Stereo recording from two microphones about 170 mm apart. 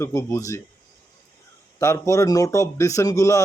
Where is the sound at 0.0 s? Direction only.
15° left (ahead or behind).